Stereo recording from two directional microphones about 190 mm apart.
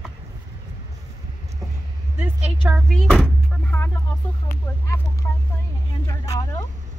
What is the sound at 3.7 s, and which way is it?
Speech, 10° left (ahead or behind).